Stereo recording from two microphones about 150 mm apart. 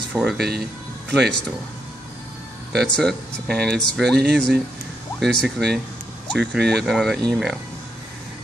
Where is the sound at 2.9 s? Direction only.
5° left (ahead or behind).